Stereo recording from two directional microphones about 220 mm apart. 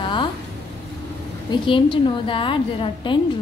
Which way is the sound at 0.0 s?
20° left (ahead or behind).